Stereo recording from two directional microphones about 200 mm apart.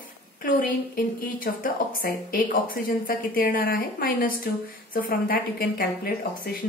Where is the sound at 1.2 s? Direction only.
45° left (ahead or behind).